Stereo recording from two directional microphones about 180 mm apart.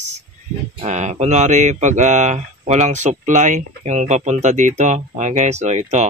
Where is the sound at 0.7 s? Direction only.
40° right (ahead or behind).